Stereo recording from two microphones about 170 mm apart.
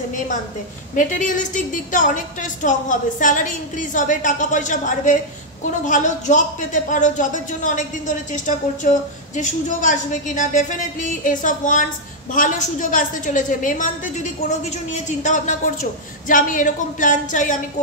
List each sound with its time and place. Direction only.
0.9 s a woman's voice: 50° left (ahead or behind)
9.3 s a woman's voice: 45° left (ahead or behind)